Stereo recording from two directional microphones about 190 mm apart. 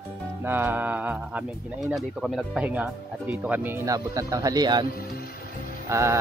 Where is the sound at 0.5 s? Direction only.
10° right (ahead or behind).